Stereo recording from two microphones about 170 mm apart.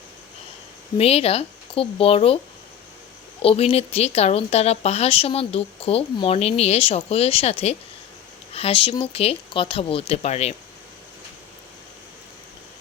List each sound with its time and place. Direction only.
0.9 s speech: 35° left (ahead or behind)
3.4 s speech: 35° left (ahead or behind)